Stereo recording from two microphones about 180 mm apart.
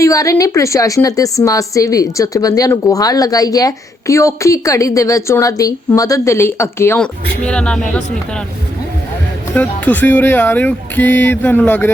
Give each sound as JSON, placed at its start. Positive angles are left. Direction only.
{"t": 0.0, "sound": "a woman's voice", "side_deg": 20}
{"t": 9.6, "sound": "a woman's voice", "side_deg": 10}